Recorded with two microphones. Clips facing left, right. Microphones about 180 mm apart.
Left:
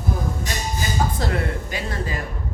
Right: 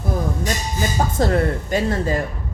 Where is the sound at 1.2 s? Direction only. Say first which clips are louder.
Right 6 dB; 45° right (ahead or behind).